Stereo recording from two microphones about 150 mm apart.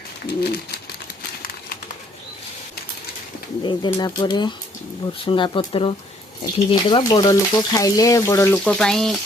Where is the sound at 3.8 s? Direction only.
30° left (ahead or behind).